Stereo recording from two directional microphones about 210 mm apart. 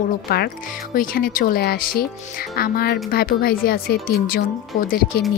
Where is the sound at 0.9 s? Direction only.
45° left (ahead or behind).